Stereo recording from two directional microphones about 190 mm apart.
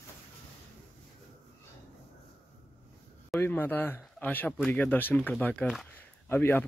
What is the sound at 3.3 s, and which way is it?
Speech, 10° left (ahead or behind).